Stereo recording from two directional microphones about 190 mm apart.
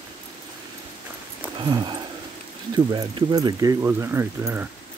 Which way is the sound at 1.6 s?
25° right (ahead or behind).